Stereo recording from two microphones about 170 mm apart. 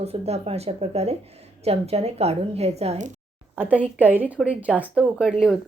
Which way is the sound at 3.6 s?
10° right (ahead or behind).